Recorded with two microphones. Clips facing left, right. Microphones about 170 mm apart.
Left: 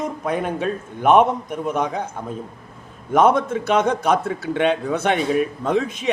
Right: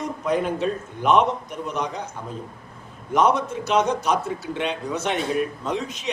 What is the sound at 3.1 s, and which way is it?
A man's voice, 50° left (ahead or behind).